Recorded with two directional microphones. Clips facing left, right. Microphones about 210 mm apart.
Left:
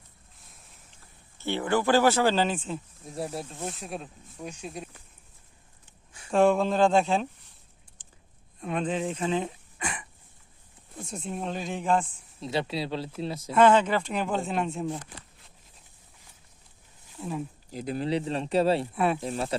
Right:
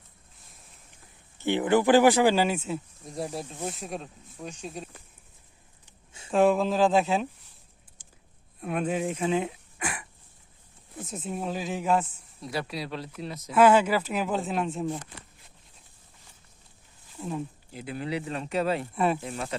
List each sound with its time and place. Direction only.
1.4 s speech: 15° right (ahead or behind)
3.0 s speech: centre (ahead or behind)
6.3 s speech: centre (ahead or behind)
8.0 s a sound: 10° right (ahead or behind)
8.6 s speech: 5° right (ahead or behind)
12.4 s speech: 25° left (ahead or behind)
13.5 s speech: 10° right (ahead or behind)
17.2 s speech: centre (ahead or behind)
17.7 s speech: 40° left (ahead or behind)
18.9 s speech: centre (ahead or behind)
19.2 s speech: 35° left (ahead or behind)